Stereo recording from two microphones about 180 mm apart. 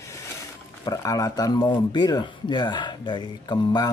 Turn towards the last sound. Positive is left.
turn(degrees=25)  # may be behind; listen again after turning